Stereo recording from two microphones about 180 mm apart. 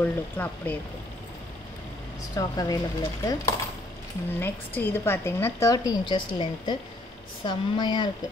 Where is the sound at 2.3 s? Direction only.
20° left (ahead or behind).